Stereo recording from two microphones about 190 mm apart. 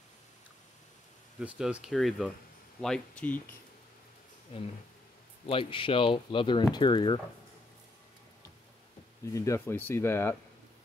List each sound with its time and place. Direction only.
1.4 s speech: 5° right (ahead or behind)
4.5 s speech: 30° left (ahead or behind)
9.2 s speech: 15° left (ahead or behind)